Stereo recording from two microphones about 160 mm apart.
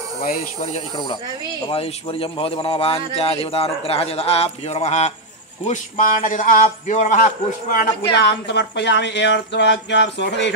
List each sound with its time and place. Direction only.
0.2 s a man's voice: 50° left (ahead or behind)
5.7 s a man's voice: 55° left (ahead or behind)
7.7 s speech: 80° left